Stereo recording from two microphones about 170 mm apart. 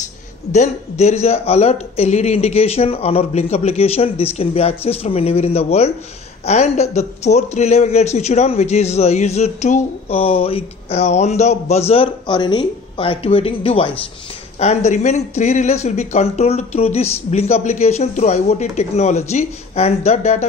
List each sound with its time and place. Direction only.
0.5 s a man's voice: 40° left (ahead or behind)